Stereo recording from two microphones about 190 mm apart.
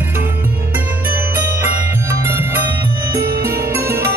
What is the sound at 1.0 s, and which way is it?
Music, 10° right (ahead or behind).